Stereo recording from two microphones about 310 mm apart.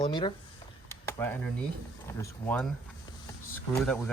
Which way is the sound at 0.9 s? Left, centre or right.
Centre.